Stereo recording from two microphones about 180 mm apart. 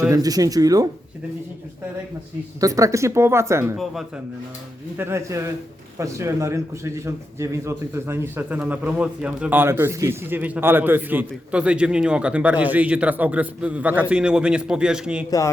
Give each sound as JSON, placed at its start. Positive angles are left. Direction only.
{"t": 0.0, "sound": "speech", "side_deg": -20}
{"t": 2.6, "sound": "a man's voice", "side_deg": -20}
{"t": 4.9, "sound": "a man's voice", "side_deg": -15}